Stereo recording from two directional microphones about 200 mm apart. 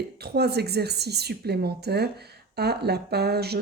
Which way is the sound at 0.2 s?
55° right (ahead or behind).